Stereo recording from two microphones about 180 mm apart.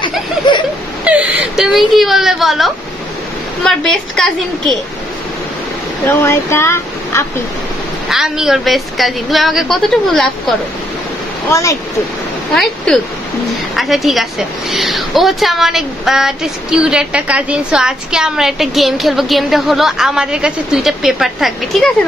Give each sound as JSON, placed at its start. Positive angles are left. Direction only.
{"t": 0.5, "sound": "a sound", "side_deg": 25}
{"t": 1.0, "sound": "speech", "side_deg": -5}
{"t": 6.0, "sound": "speech", "side_deg": 15}
{"t": 8.1, "sound": "speech", "side_deg": -5}
{"t": 12.5, "sound": "speech", "side_deg": 0}